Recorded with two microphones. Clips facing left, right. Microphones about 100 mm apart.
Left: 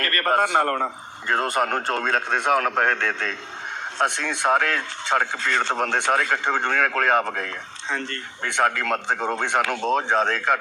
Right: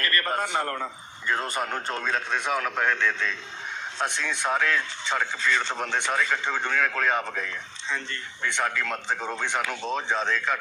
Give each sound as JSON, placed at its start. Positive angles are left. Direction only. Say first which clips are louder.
{"t": 0.0, "sound": "a man's voice", "louder": "left 6 dB", "side_deg": 50}
{"t": 1.3, "sound": "speech", "louder": "left 6 dB", "side_deg": 65}